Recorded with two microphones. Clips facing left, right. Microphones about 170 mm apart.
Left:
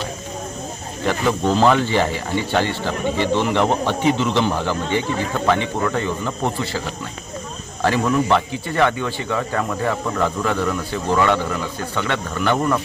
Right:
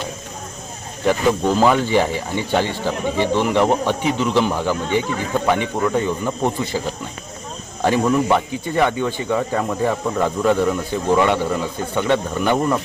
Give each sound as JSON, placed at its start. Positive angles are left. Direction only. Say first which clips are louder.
{"t": 1.3, "sound": "speech", "louder": "left 1 dB", "side_deg": -10}